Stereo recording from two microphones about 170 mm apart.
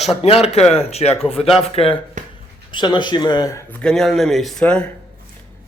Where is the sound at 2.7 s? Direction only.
25° left (ahead or behind); by 4.8 s 5° left (ahead or behind).